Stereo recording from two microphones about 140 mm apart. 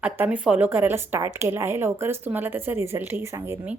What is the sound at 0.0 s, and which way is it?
Speech, 10° right (ahead or behind).